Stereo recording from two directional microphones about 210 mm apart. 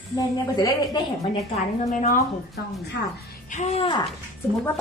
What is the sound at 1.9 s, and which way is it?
Speech, 35° left (ahead or behind).